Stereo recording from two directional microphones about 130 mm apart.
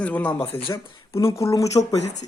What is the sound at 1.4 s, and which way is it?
Speech, 25° left (ahead or behind).